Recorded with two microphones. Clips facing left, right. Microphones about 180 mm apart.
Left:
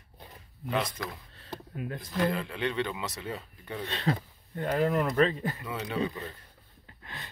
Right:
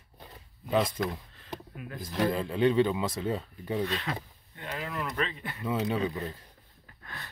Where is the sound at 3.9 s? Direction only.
35° left (ahead or behind).